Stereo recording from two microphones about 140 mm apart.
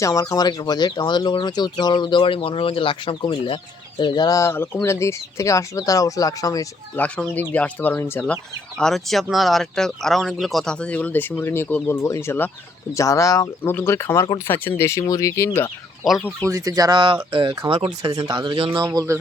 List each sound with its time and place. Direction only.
0.0 s speech: 25° left (ahead or behind)
6.9 s speech: 10° left (ahead or behind)
8.8 s speech: centre (ahead or behind); by 15.4 s 20° left (ahead or behind)
16.0 s speech: centre (ahead or behind)
16.5 s speech: 25° right (ahead or behind); by 18.1 s 40° right (ahead or behind)
18.1 s speech: 30° right (ahead or behind)
18.7 s speech: 25° right (ahead or behind)